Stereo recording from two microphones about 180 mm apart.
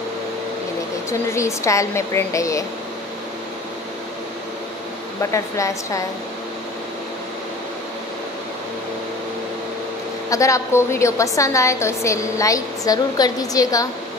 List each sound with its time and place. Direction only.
1.3 s a woman's voice: 15° left (ahead or behind)
5.3 s a woman's voice: 15° left (ahead or behind)
10.3 s a woman's voice: 15° left (ahead or behind)